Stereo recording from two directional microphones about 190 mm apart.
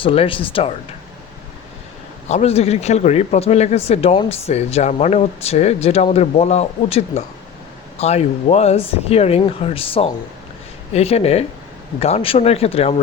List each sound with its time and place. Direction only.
0.0 s speech: 30° left (ahead or behind)
2.3 s a man's voice: 35° left (ahead or behind)